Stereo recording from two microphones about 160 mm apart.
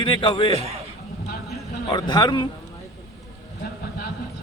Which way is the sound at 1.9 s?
30° left (ahead or behind).